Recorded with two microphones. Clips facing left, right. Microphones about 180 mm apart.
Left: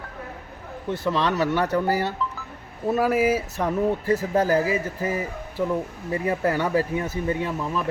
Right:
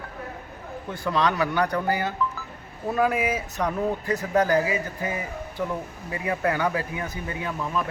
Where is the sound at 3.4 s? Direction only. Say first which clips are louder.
Left 3 dB; 30° left (ahead or behind).